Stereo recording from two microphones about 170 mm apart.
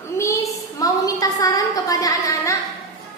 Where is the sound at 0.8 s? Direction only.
20° left (ahead or behind).